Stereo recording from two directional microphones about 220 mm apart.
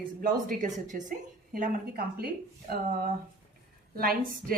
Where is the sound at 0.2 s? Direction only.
35° right (ahead or behind).